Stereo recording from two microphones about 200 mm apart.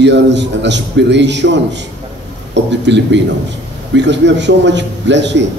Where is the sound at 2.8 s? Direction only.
60° right (ahead or behind).